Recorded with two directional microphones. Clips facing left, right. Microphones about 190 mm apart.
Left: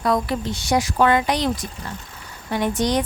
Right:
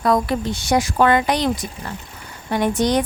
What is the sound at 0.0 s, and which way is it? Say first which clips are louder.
A woman's voice: right 3 dB; 50° right (ahead or behind).